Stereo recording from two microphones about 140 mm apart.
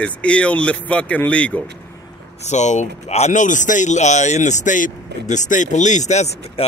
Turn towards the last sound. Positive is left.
turn(degrees=55)  # may be behind; listen again after turning